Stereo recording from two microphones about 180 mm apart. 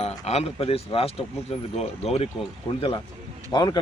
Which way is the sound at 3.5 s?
25° left (ahead or behind).